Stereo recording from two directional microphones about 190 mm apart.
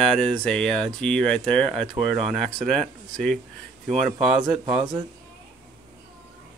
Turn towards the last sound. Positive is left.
turn(degrees=-5)  # may be behind; listen again after turning